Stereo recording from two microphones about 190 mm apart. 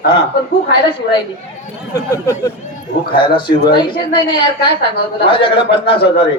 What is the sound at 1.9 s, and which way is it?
Speech, 15° left (ahead or behind).